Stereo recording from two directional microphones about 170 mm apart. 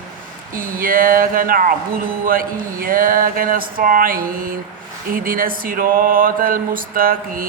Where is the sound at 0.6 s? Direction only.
55° right (ahead or behind).